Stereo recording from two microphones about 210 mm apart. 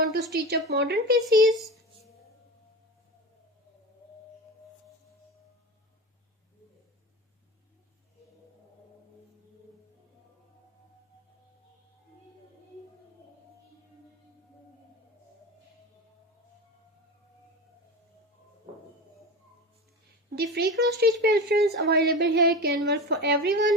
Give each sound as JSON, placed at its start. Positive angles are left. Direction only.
{"t": 0.0, "sound": "a sound", "side_deg": -50}
{"t": 0.7, "sound": "speech", "side_deg": -50}
{"t": 20.3, "sound": "speech", "side_deg": -50}